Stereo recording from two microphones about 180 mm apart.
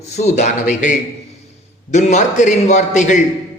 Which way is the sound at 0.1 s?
40° left (ahead or behind).